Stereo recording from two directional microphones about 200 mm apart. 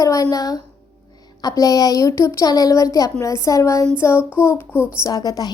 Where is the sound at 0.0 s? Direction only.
15° left (ahead or behind).